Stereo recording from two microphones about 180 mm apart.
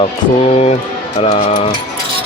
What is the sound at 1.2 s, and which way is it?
Speech, 30° left (ahead or behind).